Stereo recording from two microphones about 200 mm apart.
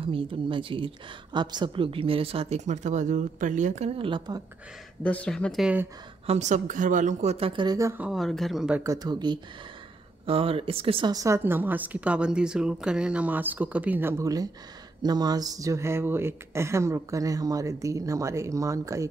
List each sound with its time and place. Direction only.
0.0 s a woman's voice: 25° right (ahead or behind)
5.0 s speech: 5° left (ahead or behind)
6.2 s speech: 35° right (ahead or behind); by 7.9 s 20° right (ahead or behind)
8.0 s speech: centre (ahead or behind)
8.8 s a woman's voice: 20° right (ahead or behind)